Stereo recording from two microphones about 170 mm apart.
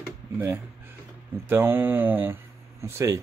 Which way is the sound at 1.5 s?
15° right (ahead or behind).